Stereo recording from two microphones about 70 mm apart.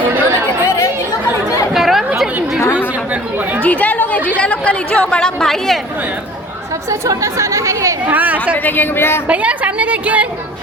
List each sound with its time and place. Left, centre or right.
0.1 s chatter: right
1.7 s chatter: centre
3.6 s chatter: left; by 5.8 s centre
7.0 s speech: right
8.0 s a woman's voice: right
8.5 s speech: left
9.2 s a woman's voice: centre